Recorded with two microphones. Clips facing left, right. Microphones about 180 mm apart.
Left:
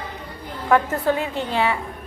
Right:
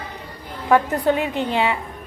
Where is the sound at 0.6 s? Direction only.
15° right (ahead or behind).